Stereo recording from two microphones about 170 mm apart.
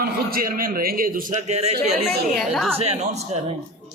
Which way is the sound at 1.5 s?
40° right (ahead or behind).